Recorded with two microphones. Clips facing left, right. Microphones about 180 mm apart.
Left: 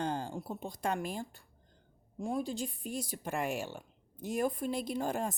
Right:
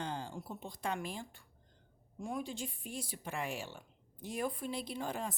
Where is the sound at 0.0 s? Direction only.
45° left (ahead or behind).